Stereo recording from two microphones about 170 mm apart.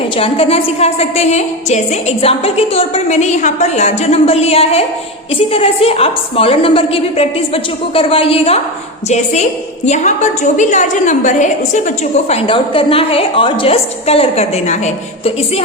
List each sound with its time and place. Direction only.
0.2 s a woman's voice: 35° left (ahead or behind)